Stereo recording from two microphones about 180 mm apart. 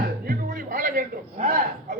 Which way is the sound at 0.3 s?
50° right (ahead or behind).